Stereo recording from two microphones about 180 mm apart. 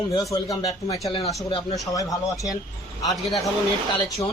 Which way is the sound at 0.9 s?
35° left (ahead or behind).